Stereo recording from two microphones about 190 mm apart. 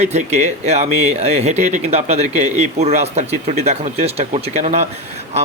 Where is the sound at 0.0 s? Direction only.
35° right (ahead or behind).